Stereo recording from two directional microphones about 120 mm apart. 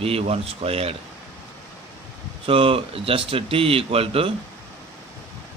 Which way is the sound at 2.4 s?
50° right (ahead or behind).